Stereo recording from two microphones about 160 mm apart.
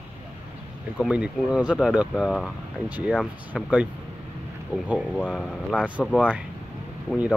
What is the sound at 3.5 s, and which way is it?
Speech, centre (ahead or behind).